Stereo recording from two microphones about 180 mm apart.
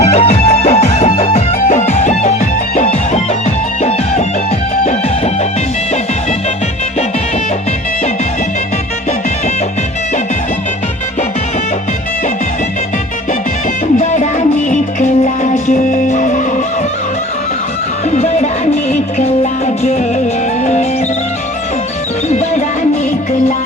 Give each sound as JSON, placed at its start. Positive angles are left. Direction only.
{"t": 0.0, "sound": "music", "side_deg": 40}
{"t": 14.0, "sound": "music", "side_deg": 40}
{"t": 18.1, "sound": "music", "side_deg": 40}
{"t": 22.3, "sound": "music", "side_deg": 40}